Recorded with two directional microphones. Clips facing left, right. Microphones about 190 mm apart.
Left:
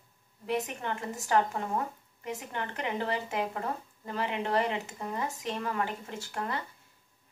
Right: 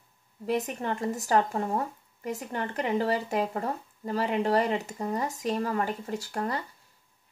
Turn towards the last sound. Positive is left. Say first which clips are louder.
# right 4 dB
turn(degrees=-35)  # may be behind; listen again after turning